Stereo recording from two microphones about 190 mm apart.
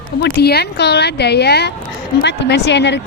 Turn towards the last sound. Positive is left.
turn(degrees=65)  # may be behind; listen again after turning